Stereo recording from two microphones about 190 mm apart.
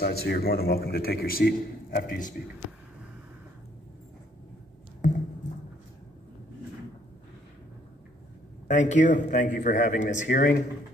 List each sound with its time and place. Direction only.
0.0 s a man's voice: 55° left (ahead or behind)
5.0 s a sound: 40° left (ahead or behind)
8.6 s a man's voice: 40° left (ahead or behind)